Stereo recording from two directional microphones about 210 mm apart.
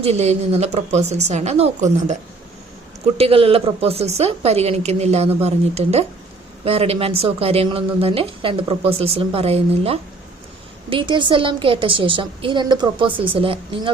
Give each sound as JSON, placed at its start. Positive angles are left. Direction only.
{"t": 0.0, "sound": "speech", "side_deg": -30}
{"t": 3.2, "sound": "speech", "side_deg": -25}